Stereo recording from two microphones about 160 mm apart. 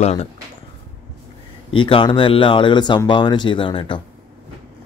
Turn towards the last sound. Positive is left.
turn(degrees=30)  # may be behind; listen again after turning